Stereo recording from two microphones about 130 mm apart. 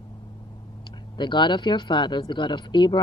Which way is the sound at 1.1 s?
35° left (ahead or behind).